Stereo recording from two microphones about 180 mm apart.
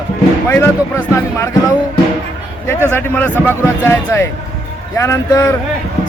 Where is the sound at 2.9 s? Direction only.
10° left (ahead or behind).